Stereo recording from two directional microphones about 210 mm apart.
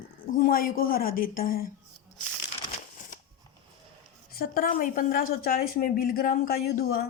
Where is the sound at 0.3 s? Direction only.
45° left (ahead or behind).